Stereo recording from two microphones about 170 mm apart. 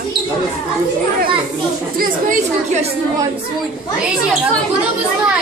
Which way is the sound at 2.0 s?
45° right (ahead or behind).